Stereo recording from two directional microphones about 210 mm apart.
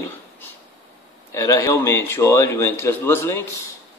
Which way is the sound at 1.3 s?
15° left (ahead or behind).